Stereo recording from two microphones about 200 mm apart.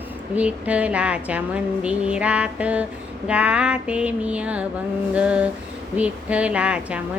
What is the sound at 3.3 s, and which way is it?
Mantra, 5° right (ahead or behind).